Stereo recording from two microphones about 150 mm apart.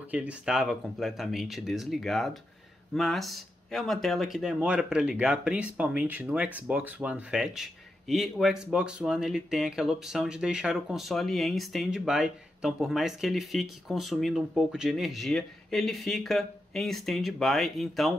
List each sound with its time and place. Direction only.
0.0 s speech: 10° right (ahead or behind)